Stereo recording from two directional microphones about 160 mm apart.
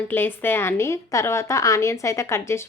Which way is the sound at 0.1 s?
15° left (ahead or behind).